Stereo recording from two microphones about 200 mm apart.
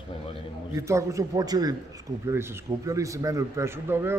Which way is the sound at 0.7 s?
15° right (ahead or behind).